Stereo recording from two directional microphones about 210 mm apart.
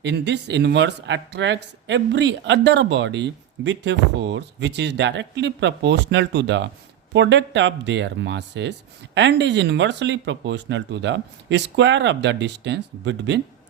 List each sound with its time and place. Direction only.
0.0 s speech: 55° right (ahead or behind)